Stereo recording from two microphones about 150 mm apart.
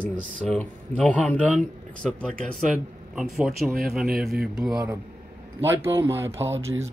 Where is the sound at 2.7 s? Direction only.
5° right (ahead or behind).